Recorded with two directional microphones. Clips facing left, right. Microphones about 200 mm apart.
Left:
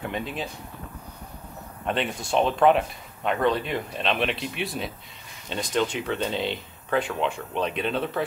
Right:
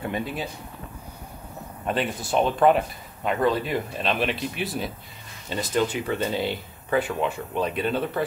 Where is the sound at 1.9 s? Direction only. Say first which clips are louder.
Right 1 dB; centre (ahead or behind).